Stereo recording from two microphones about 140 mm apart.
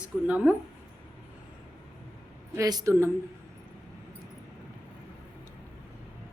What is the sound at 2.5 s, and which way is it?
Speech, 25° right (ahead or behind).